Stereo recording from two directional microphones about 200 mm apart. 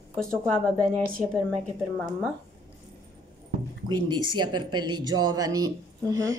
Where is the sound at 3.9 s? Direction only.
20° right (ahead or behind).